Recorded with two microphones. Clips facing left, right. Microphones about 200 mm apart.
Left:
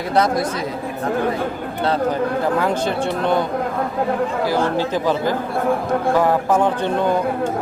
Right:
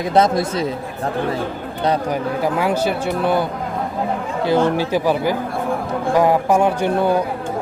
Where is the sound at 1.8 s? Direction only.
15° right (ahead or behind).